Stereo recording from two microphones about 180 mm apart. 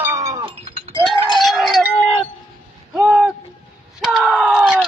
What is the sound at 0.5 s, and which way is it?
Goat, 30° right (ahead or behind).